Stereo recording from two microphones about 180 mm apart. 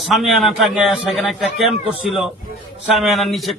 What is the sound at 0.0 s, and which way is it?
A man's voice, centre (ahead or behind).